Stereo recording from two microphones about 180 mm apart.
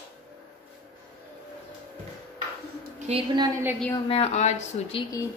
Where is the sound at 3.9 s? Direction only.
30° left (ahead or behind).